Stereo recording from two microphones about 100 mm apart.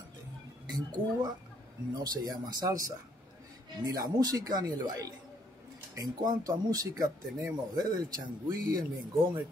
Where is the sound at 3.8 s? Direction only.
40° right (ahead or behind).